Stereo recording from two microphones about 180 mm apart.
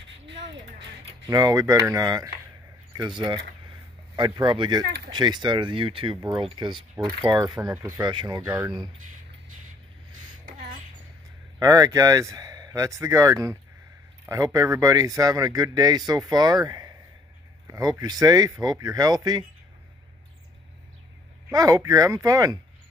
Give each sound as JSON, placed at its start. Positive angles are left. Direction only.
{"t": 1.2, "sound": "speech", "side_deg": -20}
{"t": 4.2, "sound": "speech", "side_deg": -25}
{"t": 11.6, "sound": "speech", "side_deg": -20}
{"t": 21.5, "sound": "speech", "side_deg": -20}